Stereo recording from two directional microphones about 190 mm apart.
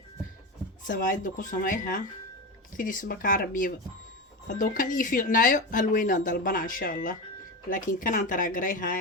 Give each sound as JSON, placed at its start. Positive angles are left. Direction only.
{"t": 0.9, "sound": "speech", "side_deg": 45}